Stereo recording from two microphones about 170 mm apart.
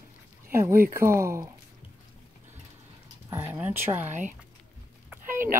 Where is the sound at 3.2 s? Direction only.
15° right (ahead or behind).